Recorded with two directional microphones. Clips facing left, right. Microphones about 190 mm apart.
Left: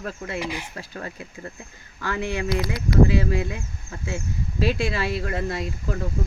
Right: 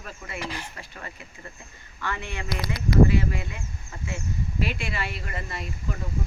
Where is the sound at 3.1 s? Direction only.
90° left.